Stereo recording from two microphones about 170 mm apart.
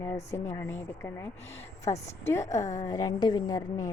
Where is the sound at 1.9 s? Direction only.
30° left (ahead or behind).